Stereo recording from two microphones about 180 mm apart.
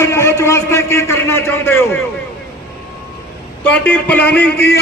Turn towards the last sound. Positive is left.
turn(degrees=10)  # may be behind; listen again after turning